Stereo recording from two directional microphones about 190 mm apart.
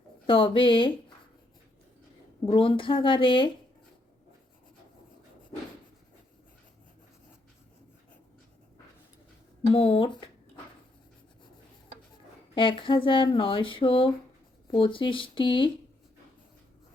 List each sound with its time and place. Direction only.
0.3 s speech: 25° left (ahead or behind)
2.5 s speech: 30° left (ahead or behind)
9.7 s speech: 30° left (ahead or behind)
12.5 s speech: 25° left (ahead or behind)